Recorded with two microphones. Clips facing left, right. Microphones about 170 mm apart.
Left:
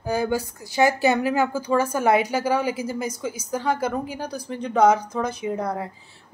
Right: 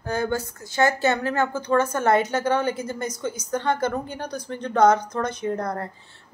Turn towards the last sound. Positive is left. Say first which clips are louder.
# even
turn(degrees=5)  # may be behind; listen again after turning